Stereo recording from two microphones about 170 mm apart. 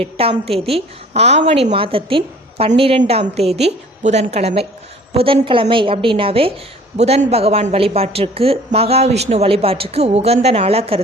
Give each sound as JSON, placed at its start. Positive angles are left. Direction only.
{"t": 0.0, "sound": "speech", "side_deg": -35}